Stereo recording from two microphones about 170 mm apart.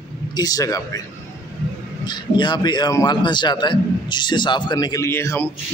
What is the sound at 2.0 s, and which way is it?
A man's voice, 25° left (ahead or behind).